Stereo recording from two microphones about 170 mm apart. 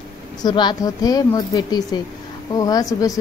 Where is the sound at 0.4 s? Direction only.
25° left (ahead or behind).